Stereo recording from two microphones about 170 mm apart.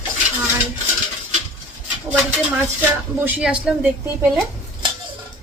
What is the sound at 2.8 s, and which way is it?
Speech, 10° right (ahead or behind).